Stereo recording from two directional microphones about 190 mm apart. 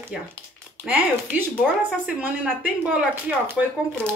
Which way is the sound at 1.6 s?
Centre (ahead or behind).